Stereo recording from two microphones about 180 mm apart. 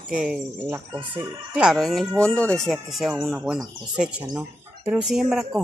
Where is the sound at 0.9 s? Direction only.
25° right (ahead or behind).